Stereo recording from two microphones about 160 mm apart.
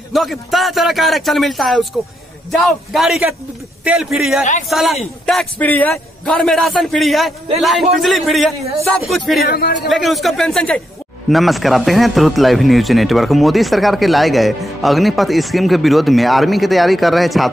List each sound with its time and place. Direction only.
0.1 s a man's voice: centre (ahead or behind)
9.4 s a man's voice: 70° left (ahead or behind)
9.8 s a man's voice: centre (ahead or behind)